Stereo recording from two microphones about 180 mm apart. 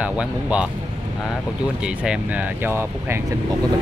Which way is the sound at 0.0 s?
5° right (ahead or behind).